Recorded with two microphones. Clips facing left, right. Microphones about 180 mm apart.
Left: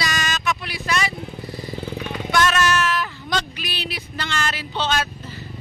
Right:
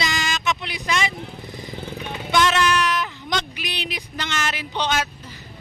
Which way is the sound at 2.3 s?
15° right (ahead or behind).